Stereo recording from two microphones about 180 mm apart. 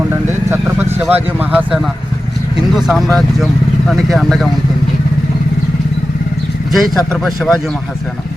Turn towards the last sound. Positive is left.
turn(degrees=0)  # may be behind; listen again after turning